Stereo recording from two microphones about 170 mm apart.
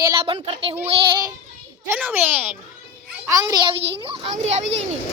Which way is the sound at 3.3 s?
20° right (ahead or behind).